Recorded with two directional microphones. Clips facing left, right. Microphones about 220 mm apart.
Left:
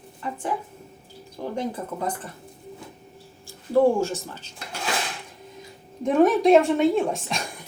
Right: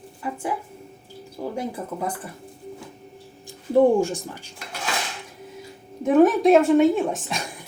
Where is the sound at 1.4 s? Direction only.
10° right (ahead or behind).